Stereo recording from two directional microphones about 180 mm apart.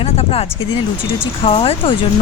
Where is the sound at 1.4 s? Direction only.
30° left (ahead or behind).